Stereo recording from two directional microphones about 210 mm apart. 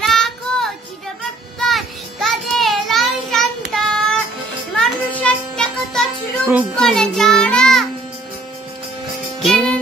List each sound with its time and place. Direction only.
0.0 s child singing: centre (ahead or behind)
9.4 s music: centre (ahead or behind)